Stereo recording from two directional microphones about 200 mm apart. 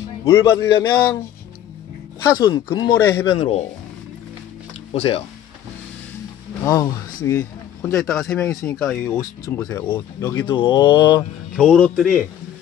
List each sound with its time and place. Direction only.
0.2 s speech: 15° left (ahead or behind)
2.2 s mantra: 20° left (ahead or behind)
4.9 s mantra: 30° left (ahead or behind)
6.6 s speech: 15° left (ahead or behind)
10.4 s mantra: 25° left (ahead or behind)
11.5 s speech: 5° left (ahead or behind)